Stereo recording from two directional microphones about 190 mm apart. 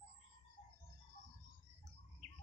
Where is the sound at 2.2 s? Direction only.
40° right (ahead or behind).